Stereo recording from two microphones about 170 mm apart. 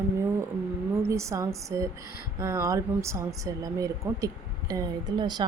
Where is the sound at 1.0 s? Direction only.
15° right (ahead or behind).